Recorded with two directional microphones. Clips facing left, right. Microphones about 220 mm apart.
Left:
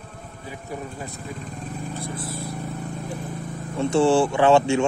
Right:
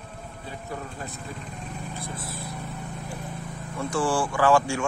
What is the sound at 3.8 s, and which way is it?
Speech, 25° left (ahead or behind).